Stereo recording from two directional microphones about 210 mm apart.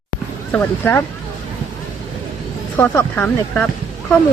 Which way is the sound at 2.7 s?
10° left (ahead or behind).